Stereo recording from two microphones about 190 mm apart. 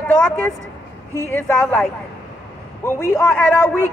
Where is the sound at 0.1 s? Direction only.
10° left (ahead or behind).